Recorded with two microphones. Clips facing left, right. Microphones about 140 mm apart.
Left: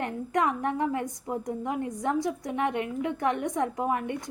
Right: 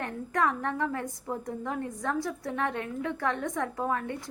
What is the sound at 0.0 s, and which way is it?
A woman's voice, 20° left (ahead or behind).